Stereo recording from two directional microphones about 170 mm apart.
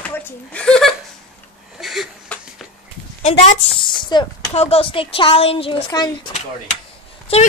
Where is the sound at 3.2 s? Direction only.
35° left (ahead or behind).